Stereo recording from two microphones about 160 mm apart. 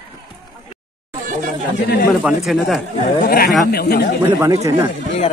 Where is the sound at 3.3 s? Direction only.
75° left (ahead or behind).